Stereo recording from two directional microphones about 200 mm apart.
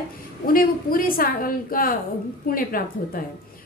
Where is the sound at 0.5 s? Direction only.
45° left (ahead or behind).